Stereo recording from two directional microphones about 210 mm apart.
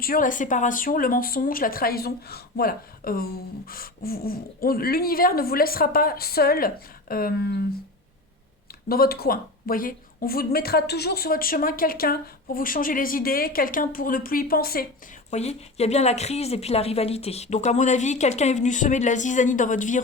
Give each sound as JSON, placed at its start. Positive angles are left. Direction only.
{"t": 0.0, "sound": "speech", "side_deg": 40}
{"t": 8.9, "sound": "speech", "side_deg": 45}
{"t": 15.3, "sound": "a woman's voice", "side_deg": 30}